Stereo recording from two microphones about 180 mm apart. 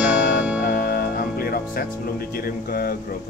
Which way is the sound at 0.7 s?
60° left (ahead or behind).